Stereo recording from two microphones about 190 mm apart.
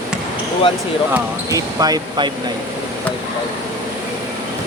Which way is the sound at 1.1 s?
15° right (ahead or behind).